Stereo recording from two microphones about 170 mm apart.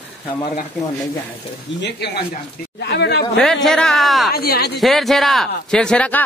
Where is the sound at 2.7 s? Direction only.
85° left.